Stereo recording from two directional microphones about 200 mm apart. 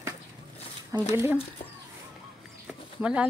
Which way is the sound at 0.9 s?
15° right (ahead or behind).